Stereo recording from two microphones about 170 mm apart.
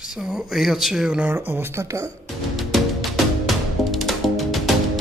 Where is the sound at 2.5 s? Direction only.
Centre (ahead or behind).